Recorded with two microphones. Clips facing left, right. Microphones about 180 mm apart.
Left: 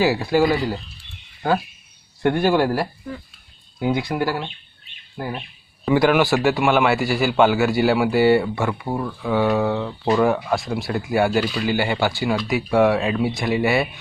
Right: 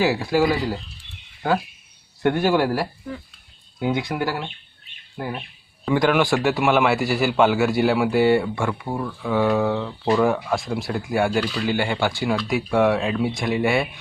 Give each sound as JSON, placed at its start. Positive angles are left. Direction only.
{"t": 0.0, "sound": "speech", "side_deg": 0}
{"t": 2.4, "sound": "speech", "side_deg": -5}
{"t": 8.9, "sound": "speech", "side_deg": 15}
{"t": 9.2, "sound": "speech", "side_deg": 0}